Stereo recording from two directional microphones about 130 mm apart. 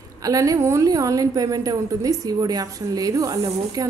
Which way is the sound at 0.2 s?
25° right (ahead or behind).